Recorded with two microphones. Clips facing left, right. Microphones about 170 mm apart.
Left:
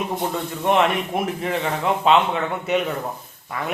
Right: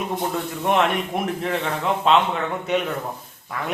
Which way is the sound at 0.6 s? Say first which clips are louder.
Left 2 dB; centre (ahead or behind).